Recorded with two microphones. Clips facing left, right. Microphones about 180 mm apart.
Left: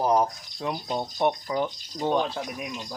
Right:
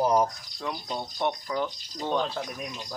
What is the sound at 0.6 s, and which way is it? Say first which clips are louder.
Speech: left 4 dB; 20° left (ahead or behind).